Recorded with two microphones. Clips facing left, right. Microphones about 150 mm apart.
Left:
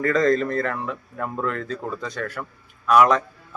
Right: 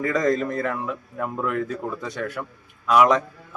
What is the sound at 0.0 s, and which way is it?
A man's voice, 15° right (ahead or behind).